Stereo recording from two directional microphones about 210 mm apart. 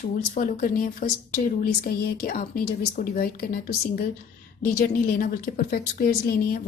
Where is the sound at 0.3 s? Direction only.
40° left (ahead or behind).